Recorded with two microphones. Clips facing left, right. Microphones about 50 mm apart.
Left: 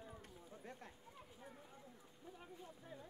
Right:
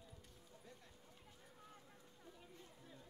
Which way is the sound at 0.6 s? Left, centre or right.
Left.